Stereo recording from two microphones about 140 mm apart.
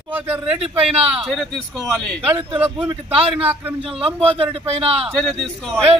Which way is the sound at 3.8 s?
40° right (ahead or behind).